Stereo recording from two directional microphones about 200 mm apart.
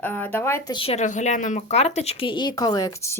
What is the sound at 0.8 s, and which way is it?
Speech, 35° left (ahead or behind).